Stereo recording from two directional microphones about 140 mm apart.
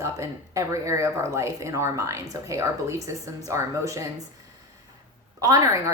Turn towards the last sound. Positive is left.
turn(degrees=-25)  # may be behind; listen again after turning